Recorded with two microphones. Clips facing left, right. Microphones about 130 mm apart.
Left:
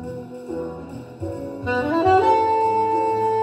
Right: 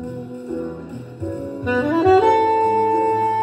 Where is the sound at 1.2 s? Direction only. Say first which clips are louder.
Right 3 dB; 15° left (ahead or behind).